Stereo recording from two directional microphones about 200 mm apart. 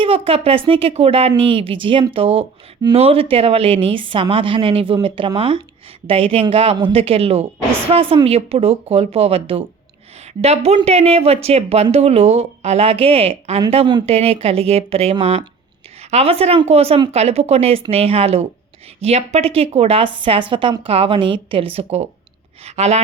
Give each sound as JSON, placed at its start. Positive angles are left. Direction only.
{"t": 0.0, "sound": "a woman's voice", "side_deg": -30}